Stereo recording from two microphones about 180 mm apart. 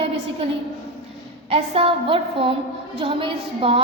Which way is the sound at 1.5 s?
30° right (ahead or behind).